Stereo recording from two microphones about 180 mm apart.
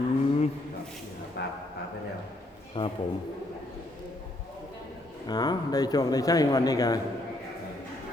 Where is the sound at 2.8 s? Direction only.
30° left (ahead or behind).